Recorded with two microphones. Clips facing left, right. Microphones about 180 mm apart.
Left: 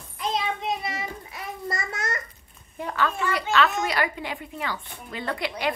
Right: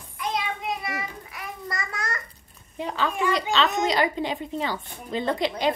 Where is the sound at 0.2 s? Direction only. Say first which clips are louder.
Left 1 dB; 25° left (ahead or behind).